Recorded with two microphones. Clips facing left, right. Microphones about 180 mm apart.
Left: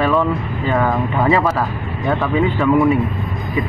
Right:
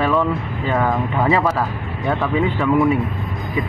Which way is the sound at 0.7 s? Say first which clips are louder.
Left 1 dB; 15° right (ahead or behind).